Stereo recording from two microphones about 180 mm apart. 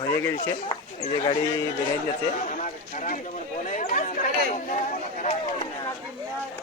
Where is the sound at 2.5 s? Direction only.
45° left (ahead or behind).